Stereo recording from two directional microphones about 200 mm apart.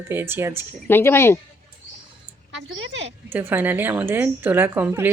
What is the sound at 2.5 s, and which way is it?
Speech, 65° right (ahead or behind).